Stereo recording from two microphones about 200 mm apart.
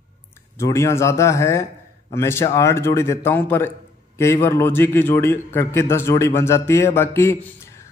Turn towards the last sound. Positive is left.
turn(degrees=15)  # may be behind; listen again after turning